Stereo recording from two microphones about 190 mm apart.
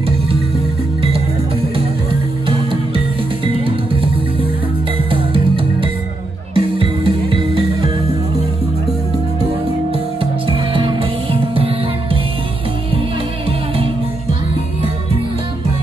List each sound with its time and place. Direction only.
3.4 s music: 30° right (ahead or behind)
5.1 s music: 25° right (ahead or behind)
10.5 s music: 25° right (ahead or behind)